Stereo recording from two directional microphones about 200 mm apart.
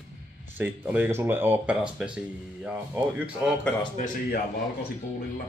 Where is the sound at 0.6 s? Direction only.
10° right (ahead or behind).